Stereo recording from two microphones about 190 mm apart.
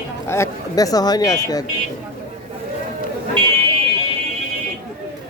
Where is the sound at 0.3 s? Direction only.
15° left (ahead or behind).